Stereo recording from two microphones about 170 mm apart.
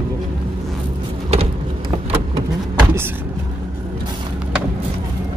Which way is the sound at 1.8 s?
30° right (ahead or behind).